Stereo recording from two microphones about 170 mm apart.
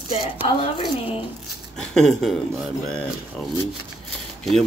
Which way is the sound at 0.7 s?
30° left (ahead or behind).